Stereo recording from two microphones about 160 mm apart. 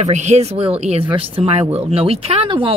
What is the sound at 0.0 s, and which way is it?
Speech, 45° right (ahead or behind).